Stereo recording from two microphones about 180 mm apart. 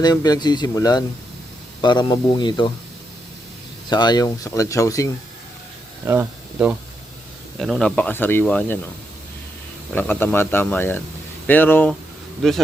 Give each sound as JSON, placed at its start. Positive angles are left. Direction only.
{"t": 0.0, "sound": "speech", "side_deg": 20}
{"t": 3.8, "sound": "speech", "side_deg": 25}
{"t": 6.1, "sound": "speech", "side_deg": -10}
{"t": 7.6, "sound": "speech", "side_deg": 0}
{"t": 9.9, "sound": "speech", "side_deg": 10}
{"t": 12.4, "sound": "speech", "side_deg": 0}